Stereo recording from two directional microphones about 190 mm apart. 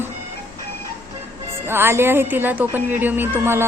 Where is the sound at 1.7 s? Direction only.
10° right (ahead or behind).